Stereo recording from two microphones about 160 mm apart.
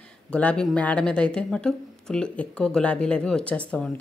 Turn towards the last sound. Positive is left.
turn(degrees=10)  # may be behind; listen again after turning